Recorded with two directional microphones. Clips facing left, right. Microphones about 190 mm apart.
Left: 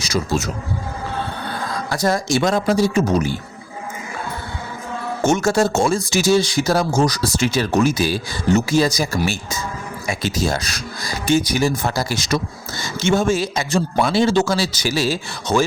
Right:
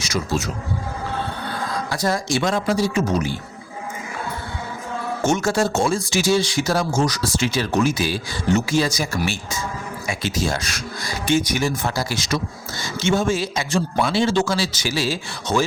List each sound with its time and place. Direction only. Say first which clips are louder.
0.0 s speech: left 2 dB; 40° left (ahead or behind)
1.9 s speech: left 4 dB; 45° left (ahead or behind)
5.2 s speech: left 3 dB; 45° left (ahead or behind)